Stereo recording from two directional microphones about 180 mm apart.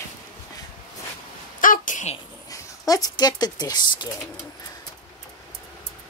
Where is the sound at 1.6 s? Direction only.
50° left (ahead or behind).